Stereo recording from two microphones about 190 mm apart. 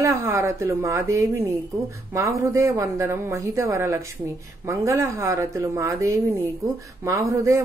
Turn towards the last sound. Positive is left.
turn(degrees=-15)  # may be behind; listen again after turning